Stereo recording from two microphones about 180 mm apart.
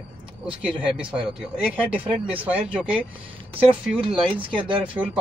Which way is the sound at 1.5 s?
10° right (ahead or behind).